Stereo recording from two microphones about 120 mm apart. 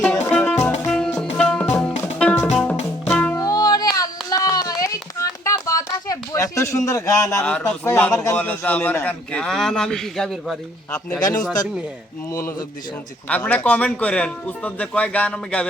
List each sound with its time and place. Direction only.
0.0 s music: 10° left (ahead or behind)
3.3 s music: 30° left (ahead or behind)
7.4 s a man's voice: 10° left (ahead or behind)
11.2 s speech: 30° left (ahead or behind)
13.2 s a man's voice: 10° left (ahead or behind)